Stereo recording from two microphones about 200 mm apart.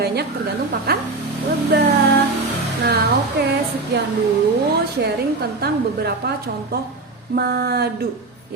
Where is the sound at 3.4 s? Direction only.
55° right (ahead or behind).